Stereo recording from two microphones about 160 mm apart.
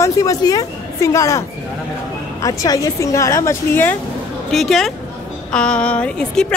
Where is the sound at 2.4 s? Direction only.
20° left (ahead or behind).